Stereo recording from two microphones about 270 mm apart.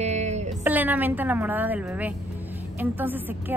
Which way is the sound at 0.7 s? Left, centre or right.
Centre.